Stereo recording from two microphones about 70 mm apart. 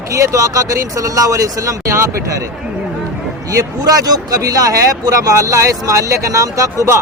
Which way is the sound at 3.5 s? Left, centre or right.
Right.